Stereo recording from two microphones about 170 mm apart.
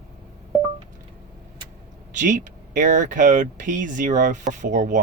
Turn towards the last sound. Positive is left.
turn(degrees=-50)  # may be behind; listen again after turning